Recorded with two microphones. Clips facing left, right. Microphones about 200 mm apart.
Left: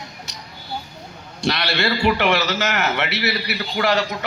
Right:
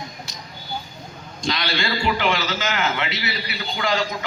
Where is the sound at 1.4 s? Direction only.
65° left (ahead or behind).